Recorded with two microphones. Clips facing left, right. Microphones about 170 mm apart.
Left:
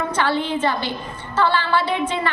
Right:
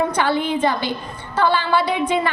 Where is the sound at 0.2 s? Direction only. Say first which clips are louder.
Right 2 dB; 15° right (ahead or behind).